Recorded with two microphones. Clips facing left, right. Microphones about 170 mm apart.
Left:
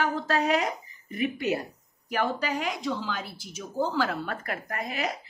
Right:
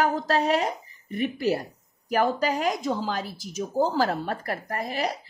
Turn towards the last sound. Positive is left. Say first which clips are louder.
# right 3 dB
turn(degrees=-35)  # may be behind; listen again after turning